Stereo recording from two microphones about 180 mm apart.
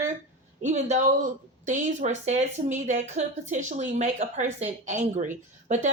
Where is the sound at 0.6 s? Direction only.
40° right (ahead or behind).